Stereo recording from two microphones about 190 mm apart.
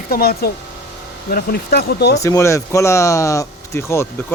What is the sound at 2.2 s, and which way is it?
Speech, 15° left (ahead or behind).